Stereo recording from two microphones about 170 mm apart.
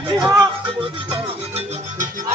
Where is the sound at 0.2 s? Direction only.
20° right (ahead or behind).